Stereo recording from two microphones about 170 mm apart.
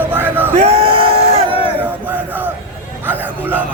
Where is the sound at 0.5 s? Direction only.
40° right (ahead or behind).